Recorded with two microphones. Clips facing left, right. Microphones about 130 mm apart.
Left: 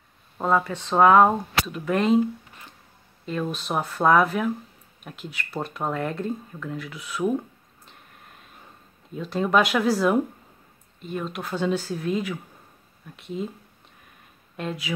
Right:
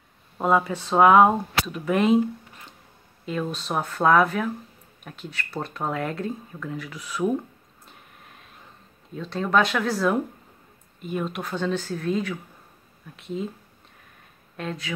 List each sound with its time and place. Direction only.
0.4 s speech: 10° right (ahead or behind)
3.3 s speech: centre (ahead or behind)
7.8 s vehicle: centre (ahead or behind)
9.1 s speech: 5° left (ahead or behind)
14.6 s speech: 5° left (ahead or behind)